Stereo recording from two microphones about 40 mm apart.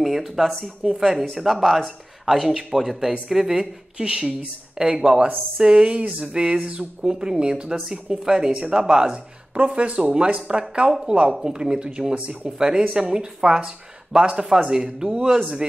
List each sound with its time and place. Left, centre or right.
0.0 s speech: centre
0.5 s speech: centre
0.9 s speech: centre
7.7 s speech: centre
8.1 s speech: centre